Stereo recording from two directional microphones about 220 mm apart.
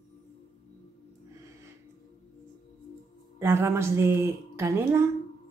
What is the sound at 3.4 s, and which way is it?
Speech, 10° right (ahead or behind).